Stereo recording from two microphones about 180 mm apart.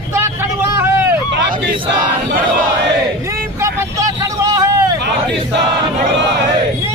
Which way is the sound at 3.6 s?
20° right (ahead or behind).